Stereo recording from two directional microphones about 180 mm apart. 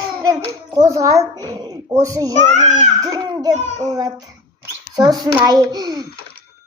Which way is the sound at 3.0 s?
20° right (ahead or behind).